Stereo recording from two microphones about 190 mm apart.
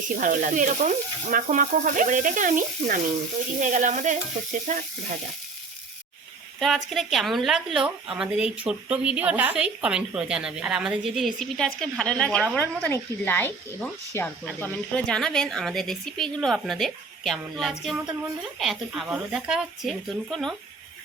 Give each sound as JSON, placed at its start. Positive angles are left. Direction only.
{"t": 0.2, "sound": "speech", "side_deg": -45}
{"t": 3.6, "sound": "sizzle", "side_deg": -40}
{"t": 6.6, "sound": "speech", "side_deg": 0}